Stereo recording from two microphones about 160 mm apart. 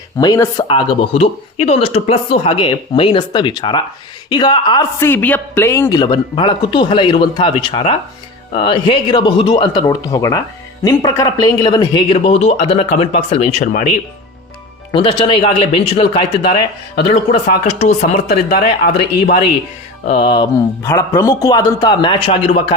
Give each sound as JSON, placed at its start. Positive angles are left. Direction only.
{"t": 0.2, "sound": "speech", "side_deg": 25}
{"t": 4.9, "sound": "speech", "side_deg": 15}
{"t": 12.1, "sound": "speech", "side_deg": 40}
{"t": 14.9, "sound": "speech", "side_deg": 35}
{"t": 17.6, "sound": "speech", "side_deg": 45}
{"t": 18.3, "sound": "speech", "side_deg": 75}
{"t": 20.1, "sound": "speech", "side_deg": 35}
{"t": 20.8, "sound": "speech", "side_deg": 15}